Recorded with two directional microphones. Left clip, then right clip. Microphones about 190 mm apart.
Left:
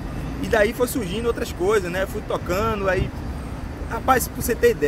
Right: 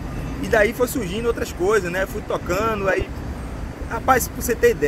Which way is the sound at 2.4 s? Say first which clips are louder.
Right 2 dB; 5° left (ahead or behind).